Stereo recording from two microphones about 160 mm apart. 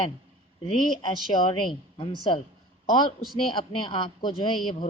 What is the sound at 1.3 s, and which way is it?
A woman's voice, 30° left (ahead or behind).